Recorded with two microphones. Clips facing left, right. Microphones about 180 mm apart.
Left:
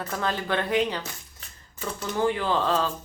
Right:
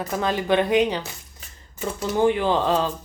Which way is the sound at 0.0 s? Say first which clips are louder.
Right 4 dB; 15° right (ahead or behind).